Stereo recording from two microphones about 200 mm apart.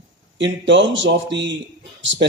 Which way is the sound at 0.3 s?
65° right (ahead or behind).